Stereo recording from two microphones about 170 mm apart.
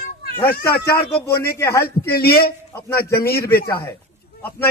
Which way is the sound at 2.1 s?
65° left (ahead or behind).